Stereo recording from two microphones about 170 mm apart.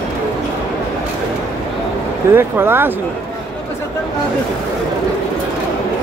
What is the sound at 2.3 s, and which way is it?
Speech, 15° right (ahead or behind).